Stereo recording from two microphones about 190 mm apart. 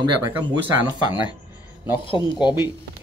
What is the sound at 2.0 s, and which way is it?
Speech, 25° left (ahead or behind).